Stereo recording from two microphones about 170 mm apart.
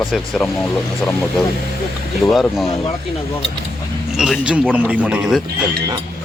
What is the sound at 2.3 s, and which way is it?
Speech, centre (ahead or behind).